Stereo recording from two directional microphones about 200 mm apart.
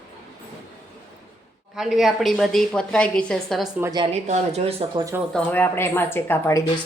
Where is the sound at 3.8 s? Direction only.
20° right (ahead or behind).